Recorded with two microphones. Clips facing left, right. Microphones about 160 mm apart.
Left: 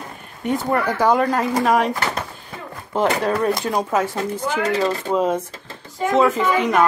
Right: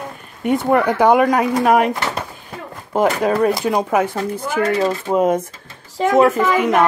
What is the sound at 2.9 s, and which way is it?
Speech, 15° right (ahead or behind).